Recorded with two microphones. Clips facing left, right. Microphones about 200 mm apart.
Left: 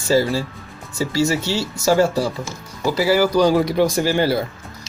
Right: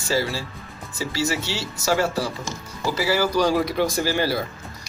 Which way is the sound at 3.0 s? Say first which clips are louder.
Left 5 dB; 20° left (ahead or behind).